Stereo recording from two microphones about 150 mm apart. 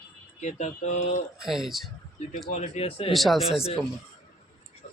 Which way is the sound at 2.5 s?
45° left (ahead or behind).